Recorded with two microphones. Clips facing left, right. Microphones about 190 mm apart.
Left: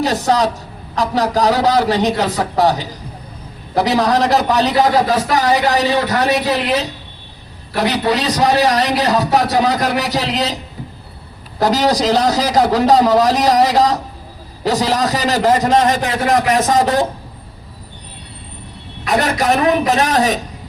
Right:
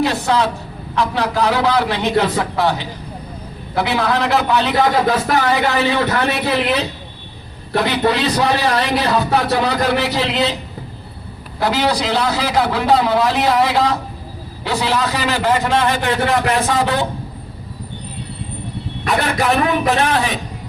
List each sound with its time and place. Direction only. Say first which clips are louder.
0.0 s a sound: left 1 dB; 40° left (ahead or behind)
0.9 s a man's voice: left 2 dB; 40° left (ahead or behind)
7.9 s a man's voice: even; 40° left (ahead or behind)
11.6 s a man's voice: left 3 dB; 40° left (ahead or behind)
19.0 s a man's voice: left 2 dB; 40° left (ahead or behind)